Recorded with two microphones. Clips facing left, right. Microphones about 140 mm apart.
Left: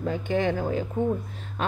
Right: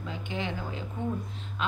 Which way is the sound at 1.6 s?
45° left (ahead or behind).